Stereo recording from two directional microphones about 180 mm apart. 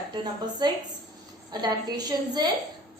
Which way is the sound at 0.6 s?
25° right (ahead or behind).